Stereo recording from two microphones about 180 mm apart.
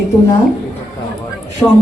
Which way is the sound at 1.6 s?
20° left (ahead or behind).